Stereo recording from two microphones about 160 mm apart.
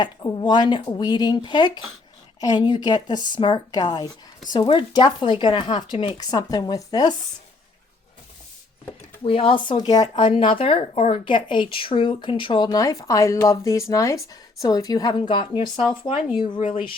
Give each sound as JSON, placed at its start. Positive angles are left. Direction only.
{"t": 0.0, "sound": "speech", "side_deg": 25}
{"t": 9.2, "sound": "speech", "side_deg": 35}